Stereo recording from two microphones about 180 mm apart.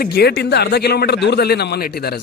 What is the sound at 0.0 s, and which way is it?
Speech, 65° left (ahead or behind).